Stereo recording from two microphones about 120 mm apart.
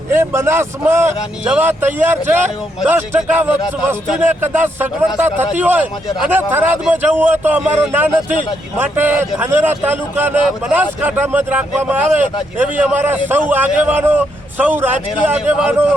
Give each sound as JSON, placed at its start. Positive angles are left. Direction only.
{"t": 0.1, "sound": "a man's voice", "side_deg": -20}